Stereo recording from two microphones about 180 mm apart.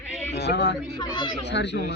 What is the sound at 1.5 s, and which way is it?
Music, 75° left (ahead or behind).